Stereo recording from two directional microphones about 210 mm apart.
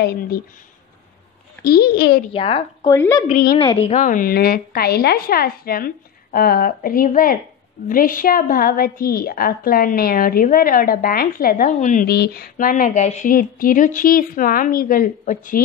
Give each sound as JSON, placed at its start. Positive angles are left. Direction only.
{"t": 0.0, "sound": "a woman's voice", "side_deg": 45}
{"t": 1.6, "sound": "a woman's voice", "side_deg": 50}
{"t": 2.3, "sound": "a woman's voice", "side_deg": 25}
{"t": 2.9, "sound": "speech", "side_deg": 15}
{"t": 3.3, "sound": "a woman's voice", "side_deg": 40}
{"t": 3.5, "sound": "a woman's voice", "side_deg": 25}